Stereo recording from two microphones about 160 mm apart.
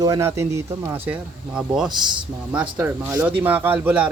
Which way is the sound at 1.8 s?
25° right (ahead or behind).